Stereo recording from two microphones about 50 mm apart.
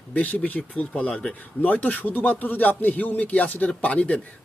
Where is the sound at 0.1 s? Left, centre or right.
Left.